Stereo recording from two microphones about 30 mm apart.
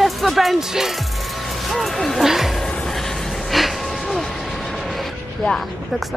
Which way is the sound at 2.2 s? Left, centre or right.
Centre.